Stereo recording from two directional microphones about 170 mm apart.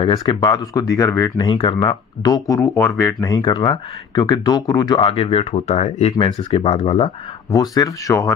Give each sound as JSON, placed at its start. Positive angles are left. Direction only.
{"t": 0.0, "sound": "speech", "side_deg": 25}
{"t": 7.5, "sound": "speech", "side_deg": 20}